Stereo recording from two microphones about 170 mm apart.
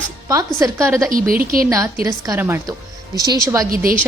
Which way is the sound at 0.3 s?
20° right (ahead or behind).